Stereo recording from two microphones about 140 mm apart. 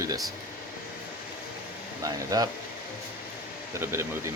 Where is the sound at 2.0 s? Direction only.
25° right (ahead or behind).